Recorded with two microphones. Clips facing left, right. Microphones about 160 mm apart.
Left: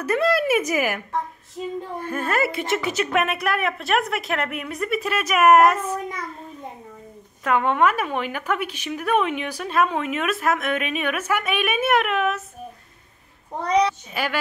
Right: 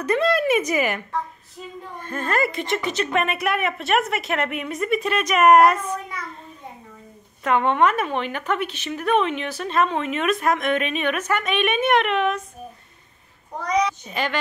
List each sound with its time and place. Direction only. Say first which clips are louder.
0.0 s a woman's voice: even; 5° left (ahead or behind)
7.4 s speech: right 1 dB; 5° left (ahead or behind)
13.6 s a child's voice: left 2 dB; 30° left (ahead or behind)
14.1 s speech: right 1 dB; 10° left (ahead or behind)